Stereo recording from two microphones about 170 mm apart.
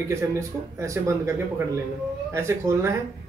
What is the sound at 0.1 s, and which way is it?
Speech, 15° right (ahead or behind).